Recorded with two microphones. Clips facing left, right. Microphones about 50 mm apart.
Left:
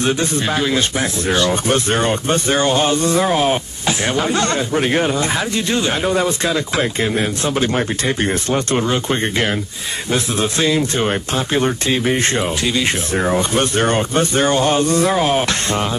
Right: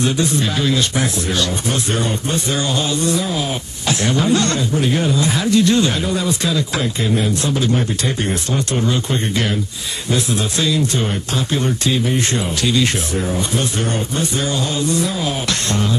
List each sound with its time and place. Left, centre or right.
0.0 s speech: left
1.5 s speech: left
3.8 s speech: left
6.0 s speech: left
12.6 s speech: left
13.2 s speech: left